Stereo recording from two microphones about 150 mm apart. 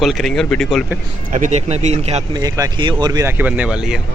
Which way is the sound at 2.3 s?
25° right (ahead or behind).